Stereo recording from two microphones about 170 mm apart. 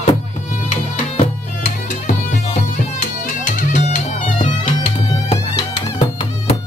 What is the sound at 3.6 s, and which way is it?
Music, 45° left (ahead or behind).